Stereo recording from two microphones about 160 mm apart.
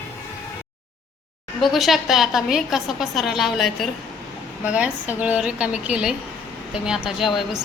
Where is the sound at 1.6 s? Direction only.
Centre (ahead or behind).